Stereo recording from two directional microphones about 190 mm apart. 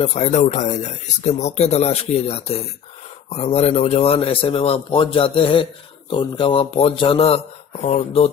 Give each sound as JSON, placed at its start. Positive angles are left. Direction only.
{"t": 0.0, "sound": "a man's voice", "side_deg": 35}